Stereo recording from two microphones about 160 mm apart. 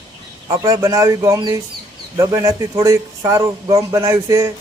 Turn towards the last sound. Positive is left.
turn(degrees=-20)  # may be behind; listen again after turning